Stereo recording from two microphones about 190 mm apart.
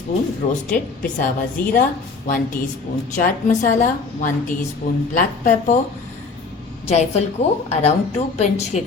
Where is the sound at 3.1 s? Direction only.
40° left (ahead or behind).